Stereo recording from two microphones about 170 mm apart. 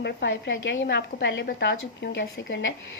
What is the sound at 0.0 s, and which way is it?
A woman's voice, 90° left.